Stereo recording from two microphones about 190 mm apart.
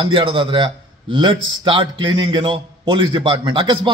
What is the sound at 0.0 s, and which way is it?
A man's voice, 25° right (ahead or behind).